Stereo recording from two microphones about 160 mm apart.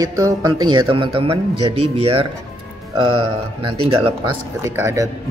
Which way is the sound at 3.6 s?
35° right (ahead or behind).